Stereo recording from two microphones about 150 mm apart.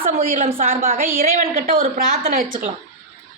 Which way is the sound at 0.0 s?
65° right (ahead or behind).